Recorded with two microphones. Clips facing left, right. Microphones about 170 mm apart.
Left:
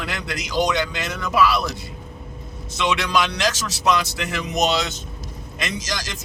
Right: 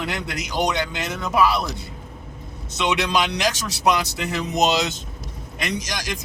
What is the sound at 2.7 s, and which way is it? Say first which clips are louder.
A man's voice: even; 20° right (ahead or behind).